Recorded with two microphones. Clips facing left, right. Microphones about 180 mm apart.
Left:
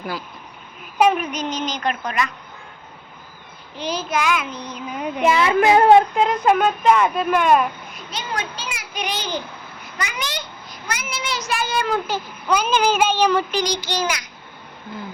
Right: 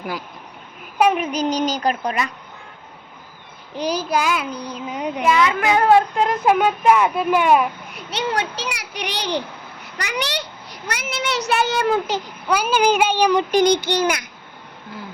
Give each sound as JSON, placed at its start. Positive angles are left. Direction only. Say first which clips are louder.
{"t": 0.9, "sound": "a child's voice", "louder": "even", "side_deg": -10}
{"t": 1.2, "sound": "child singing", "louder": "right 5 dB", "side_deg": -30}
{"t": 3.8, "sound": "child singing", "louder": "right 3 dB", "side_deg": -40}
{"t": 4.9, "sound": "speech", "louder": "right 1 dB", "side_deg": -15}
{"t": 5.2, "sound": "a child's voice", "louder": "left 2 dB", "side_deg": 30}
{"t": 6.1, "sound": "speech", "louder": "even", "side_deg": -5}
{"t": 7.9, "sound": "a child's voice", "louder": "right 9 dB", "side_deg": -70}
{"t": 12.0, "sound": "speech", "louder": "right 1 dB", "side_deg": -15}
{"t": 13.5, "sound": "a child's voice", "louder": "right 7 dB", "side_deg": -55}